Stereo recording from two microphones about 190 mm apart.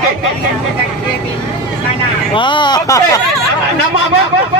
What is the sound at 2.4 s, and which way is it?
Speech, 25° left (ahead or behind).